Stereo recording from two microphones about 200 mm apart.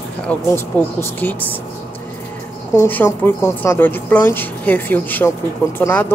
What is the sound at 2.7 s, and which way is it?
Speech, 10° left (ahead or behind).